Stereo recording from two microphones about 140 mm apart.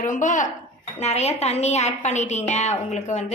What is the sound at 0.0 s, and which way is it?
Speech, 65° left (ahead or behind).